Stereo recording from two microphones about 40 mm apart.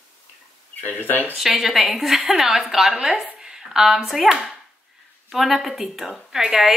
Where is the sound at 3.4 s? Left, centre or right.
Centre.